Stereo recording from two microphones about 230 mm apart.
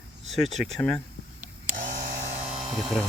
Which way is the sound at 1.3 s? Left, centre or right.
Right.